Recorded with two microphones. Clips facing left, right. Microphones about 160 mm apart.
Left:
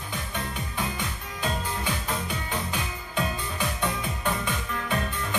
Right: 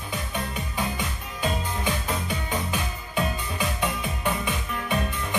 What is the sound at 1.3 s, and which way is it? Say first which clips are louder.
Music: right 2 dB; 15° right (ahead or behind).